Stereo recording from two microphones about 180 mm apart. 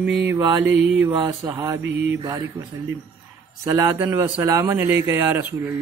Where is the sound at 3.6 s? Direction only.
15° right (ahead or behind).